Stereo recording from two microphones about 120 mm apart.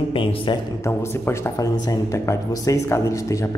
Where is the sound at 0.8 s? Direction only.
20° left (ahead or behind).